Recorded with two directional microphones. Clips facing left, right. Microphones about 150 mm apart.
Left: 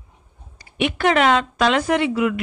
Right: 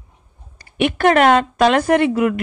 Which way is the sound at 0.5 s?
50° right (ahead or behind).